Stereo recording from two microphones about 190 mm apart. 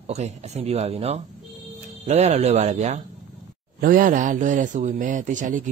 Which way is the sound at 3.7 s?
45° right (ahead or behind).